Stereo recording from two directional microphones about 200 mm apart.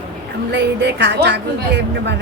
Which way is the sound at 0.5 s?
60° right (ahead or behind).